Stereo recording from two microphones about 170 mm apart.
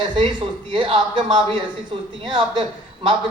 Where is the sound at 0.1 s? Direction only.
30° right (ahead or behind).